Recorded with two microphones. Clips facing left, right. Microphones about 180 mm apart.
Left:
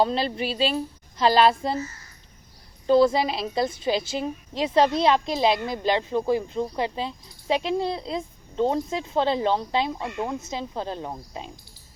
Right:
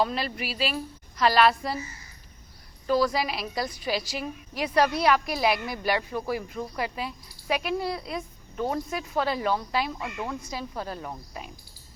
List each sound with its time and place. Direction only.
0.0 s a woman's voice: 30° left (ahead or behind)
2.8 s a woman's voice: 25° left (ahead or behind)